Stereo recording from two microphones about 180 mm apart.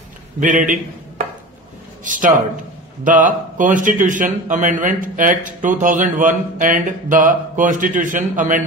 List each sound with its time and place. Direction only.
0.4 s a man's voice: 45° right (ahead or behind)
2.0 s a man's voice: 45° right (ahead or behind)